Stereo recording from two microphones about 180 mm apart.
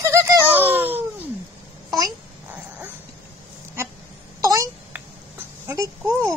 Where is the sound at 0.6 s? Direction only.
10° right (ahead or behind).